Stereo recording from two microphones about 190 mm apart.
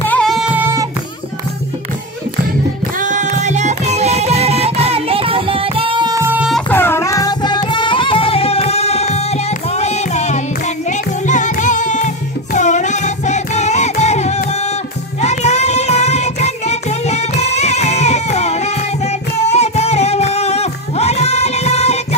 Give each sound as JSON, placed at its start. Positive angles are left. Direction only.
{"t": 0.0, "sound": "music", "side_deg": 5}
{"t": 3.0, "sound": "music", "side_deg": -40}
{"t": 6.5, "sound": "music", "side_deg": 10}